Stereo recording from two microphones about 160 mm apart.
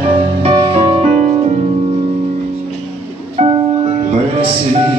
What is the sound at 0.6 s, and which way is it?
Music, 30° right (ahead or behind).